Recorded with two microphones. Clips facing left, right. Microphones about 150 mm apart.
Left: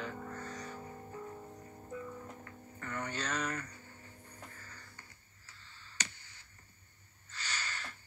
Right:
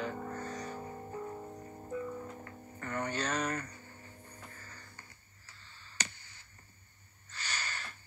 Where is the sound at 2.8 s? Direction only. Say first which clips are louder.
Right 4 dB; 40° right (ahead or behind).